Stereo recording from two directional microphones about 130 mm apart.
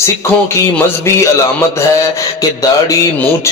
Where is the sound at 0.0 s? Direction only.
20° left (ahead or behind).